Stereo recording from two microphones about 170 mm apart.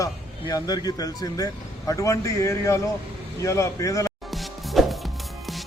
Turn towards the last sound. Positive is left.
turn(degrees=0)  # may be behind; listen again after turning